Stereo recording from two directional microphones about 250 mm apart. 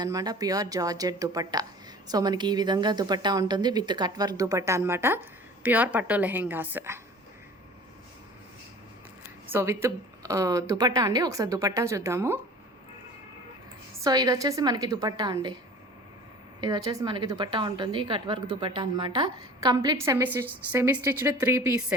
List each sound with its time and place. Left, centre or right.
0.0 s a woman's voice: centre
9.5 s a woman's voice: centre
14.0 s a woman's voice: centre
16.6 s a woman's voice: centre